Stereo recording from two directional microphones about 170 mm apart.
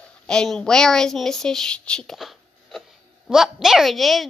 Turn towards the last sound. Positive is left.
turn(degrees=0)  # may be behind; listen again after turning